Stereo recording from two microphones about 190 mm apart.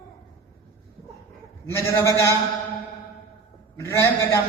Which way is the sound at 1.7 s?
15° left (ahead or behind).